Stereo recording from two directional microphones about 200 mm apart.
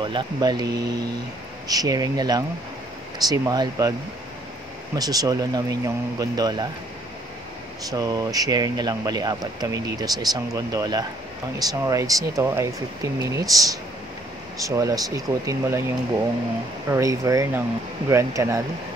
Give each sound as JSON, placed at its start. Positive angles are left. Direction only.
{"t": 0.0, "sound": "speech", "side_deg": -20}
{"t": 4.9, "sound": "speech", "side_deg": -20}
{"t": 7.9, "sound": "speech", "side_deg": -20}
{"t": 16.9, "sound": "speech", "side_deg": -15}